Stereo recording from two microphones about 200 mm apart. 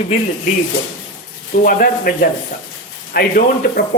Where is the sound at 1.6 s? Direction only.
45° left (ahead or behind).